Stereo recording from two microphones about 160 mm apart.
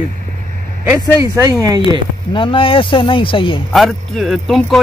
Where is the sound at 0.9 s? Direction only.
20° right (ahead or behind).